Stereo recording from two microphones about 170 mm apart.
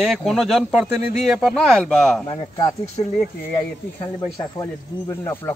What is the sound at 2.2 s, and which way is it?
Speech, 25° left (ahead or behind).